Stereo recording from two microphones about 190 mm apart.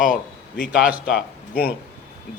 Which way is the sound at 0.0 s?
45° left (ahead or behind).